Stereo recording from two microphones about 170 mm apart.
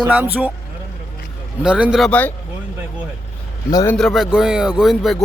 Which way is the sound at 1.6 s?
5° right (ahead or behind).